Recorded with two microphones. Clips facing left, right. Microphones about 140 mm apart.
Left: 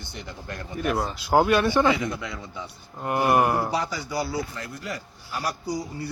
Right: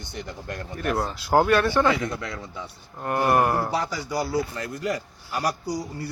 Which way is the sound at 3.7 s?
5° right (ahead or behind).